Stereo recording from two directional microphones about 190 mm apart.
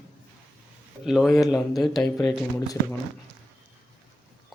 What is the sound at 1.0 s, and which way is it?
Speech, centre (ahead or behind).